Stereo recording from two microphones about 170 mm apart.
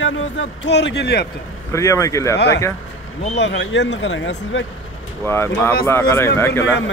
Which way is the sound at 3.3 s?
90° left.